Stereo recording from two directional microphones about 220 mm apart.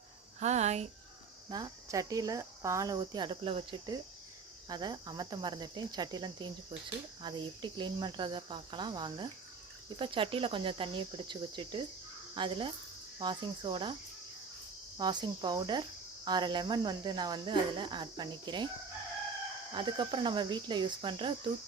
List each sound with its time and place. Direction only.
0.3 s speech: 30° right (ahead or behind)
1.5 s speech: 20° right (ahead or behind)
4.7 s cricket: 20° right (ahead or behind)
14.9 s cricket: 20° right (ahead or behind)
19.7 s cricket: 20° right (ahead or behind)